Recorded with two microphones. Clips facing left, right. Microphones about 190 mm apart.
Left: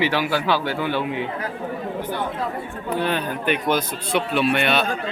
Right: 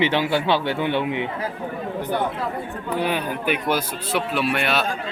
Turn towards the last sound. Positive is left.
turn(degrees=0)  # may be behind; listen again after turning